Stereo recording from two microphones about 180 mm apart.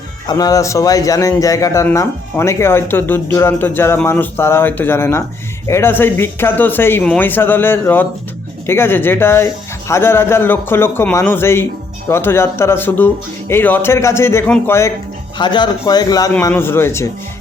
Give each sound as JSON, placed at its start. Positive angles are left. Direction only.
{"t": 0.3, "sound": "a man's voice", "side_deg": 20}
{"t": 15.4, "sound": "a man's voice", "side_deg": 25}